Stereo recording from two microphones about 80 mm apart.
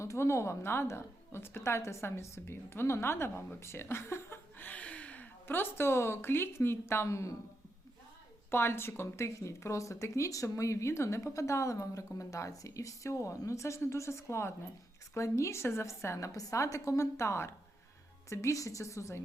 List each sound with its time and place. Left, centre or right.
0.0 s speech: left
8.4 s speech: left